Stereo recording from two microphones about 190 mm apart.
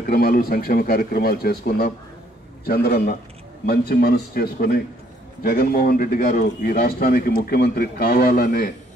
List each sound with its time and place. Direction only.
0.1 s speech: 50° left (ahead or behind)